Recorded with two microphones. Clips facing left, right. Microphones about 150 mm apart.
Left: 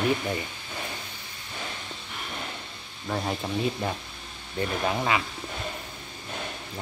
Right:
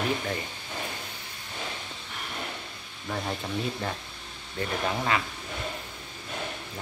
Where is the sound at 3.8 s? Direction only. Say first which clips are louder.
Left 3 dB; 10° left (ahead or behind).